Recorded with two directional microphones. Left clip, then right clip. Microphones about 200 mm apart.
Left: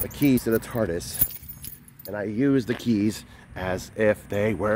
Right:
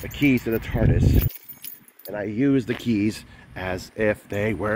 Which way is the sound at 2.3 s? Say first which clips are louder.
Right 1 dB; 5° left (ahead or behind).